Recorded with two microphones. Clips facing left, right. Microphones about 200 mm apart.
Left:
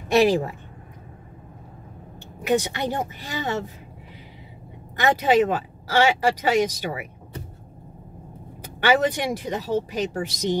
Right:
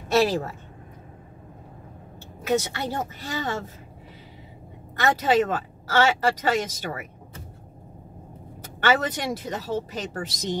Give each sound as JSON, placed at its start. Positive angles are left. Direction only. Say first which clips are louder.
{"t": 0.1, "sound": "speech", "louder": "left 3 dB", "side_deg": 15}
{"t": 2.4, "sound": "speech", "louder": "left 2 dB", "side_deg": 15}
{"t": 4.9, "sound": "speech", "louder": "left 2 dB", "side_deg": 15}
{"t": 8.8, "sound": "speech", "louder": "left 3 dB", "side_deg": 10}